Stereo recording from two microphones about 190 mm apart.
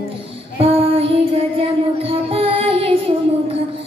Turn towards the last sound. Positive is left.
turn(degrees=-30)  # may be behind; listen again after turning